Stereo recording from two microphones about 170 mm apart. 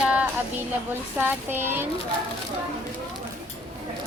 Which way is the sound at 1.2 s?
10° right (ahead or behind).